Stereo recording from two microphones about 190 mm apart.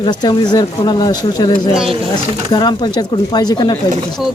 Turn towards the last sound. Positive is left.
turn(degrees=20)  # may be behind; listen again after turning